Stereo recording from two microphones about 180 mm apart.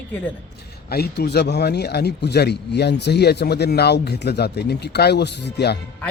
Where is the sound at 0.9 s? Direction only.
60° left (ahead or behind).